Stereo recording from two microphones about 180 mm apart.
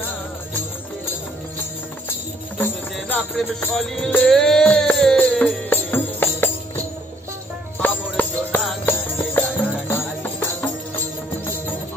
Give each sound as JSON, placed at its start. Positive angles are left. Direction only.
{"t": 2.6, "sound": "music", "side_deg": 10}
{"t": 7.8, "sound": "music", "side_deg": 10}